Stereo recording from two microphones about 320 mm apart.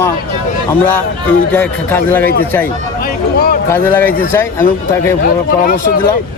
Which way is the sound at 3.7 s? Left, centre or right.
Centre.